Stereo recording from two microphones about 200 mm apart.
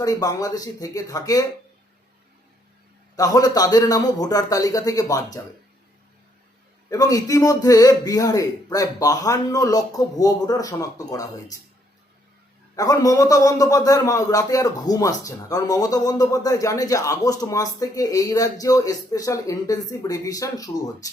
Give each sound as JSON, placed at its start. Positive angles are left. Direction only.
{"t": 0.0, "sound": "a man's voice", "side_deg": 20}
{"t": 3.2, "sound": "a man's voice", "side_deg": 15}
{"t": 6.9, "sound": "a man's voice", "side_deg": 15}
{"t": 12.7, "sound": "a man's voice", "side_deg": 20}